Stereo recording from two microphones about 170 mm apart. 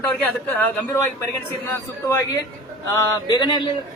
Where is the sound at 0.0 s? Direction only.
5° left (ahead or behind); by 3.5 s 25° left (ahead or behind).